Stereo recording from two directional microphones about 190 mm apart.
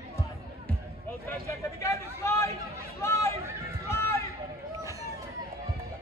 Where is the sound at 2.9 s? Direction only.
15° left (ahead or behind).